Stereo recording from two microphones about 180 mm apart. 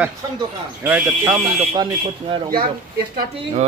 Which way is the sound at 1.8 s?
25° right (ahead or behind).